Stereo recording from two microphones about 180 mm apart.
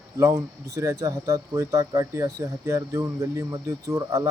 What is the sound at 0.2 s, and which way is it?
Speech, 20° right (ahead or behind).